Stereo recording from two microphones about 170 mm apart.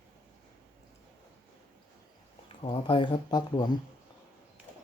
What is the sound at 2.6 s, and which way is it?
Speech, 30° left (ahead or behind).